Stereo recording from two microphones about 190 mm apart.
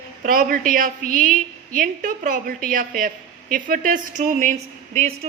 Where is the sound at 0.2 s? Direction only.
45° right (ahead or behind).